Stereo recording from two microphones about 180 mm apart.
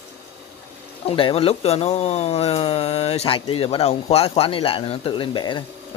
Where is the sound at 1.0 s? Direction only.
30° left (ahead or behind).